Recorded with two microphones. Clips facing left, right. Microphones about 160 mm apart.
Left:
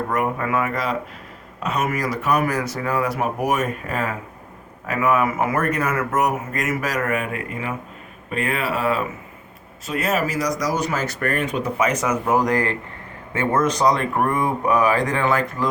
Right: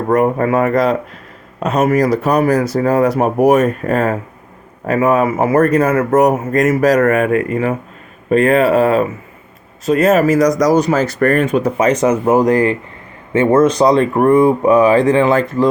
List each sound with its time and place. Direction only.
0.1 s speech: 35° right (ahead or behind)
7.0 s speech: 50° right (ahead or behind)
8.3 s speech: 40° right (ahead or behind)
11.8 s speech: 30° right (ahead or behind)